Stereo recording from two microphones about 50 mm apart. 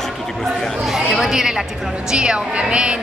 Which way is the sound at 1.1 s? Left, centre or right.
Centre.